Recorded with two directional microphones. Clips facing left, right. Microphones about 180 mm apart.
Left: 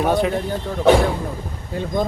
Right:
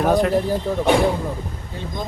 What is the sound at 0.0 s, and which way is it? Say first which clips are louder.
Speech: right 1 dB; centre (ahead or behind).